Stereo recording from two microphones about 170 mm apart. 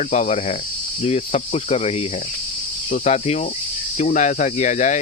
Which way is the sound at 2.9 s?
40° left (ahead or behind).